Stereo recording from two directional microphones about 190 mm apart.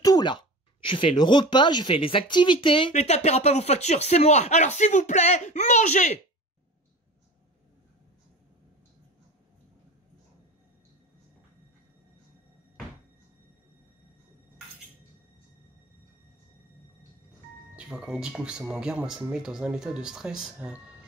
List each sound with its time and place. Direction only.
0.0 s speech: 20° left (ahead or behind); by 6.2 s 40° left (ahead or behind)
17.7 s speech: 5° right (ahead or behind)